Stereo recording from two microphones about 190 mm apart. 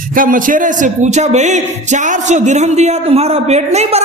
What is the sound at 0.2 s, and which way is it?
A man's voice, 45° right (ahead or behind).